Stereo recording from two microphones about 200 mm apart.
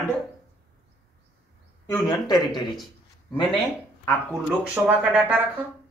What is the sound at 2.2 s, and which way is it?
Speech, 20° left (ahead or behind).